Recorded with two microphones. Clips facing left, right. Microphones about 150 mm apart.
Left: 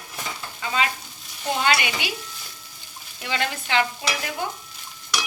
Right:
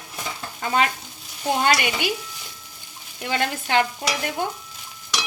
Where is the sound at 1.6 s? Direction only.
45° right (ahead or behind).